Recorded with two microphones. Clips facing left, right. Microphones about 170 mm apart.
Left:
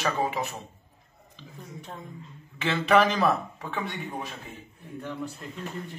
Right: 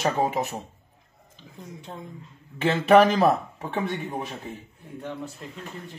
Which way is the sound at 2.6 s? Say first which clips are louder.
Right 5 dB; 45° right (ahead or behind).